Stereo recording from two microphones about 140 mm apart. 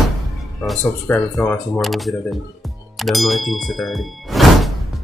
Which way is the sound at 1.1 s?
15° left (ahead or behind).